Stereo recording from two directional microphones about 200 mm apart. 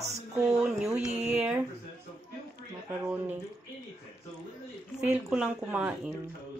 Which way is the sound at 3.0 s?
10° right (ahead or behind).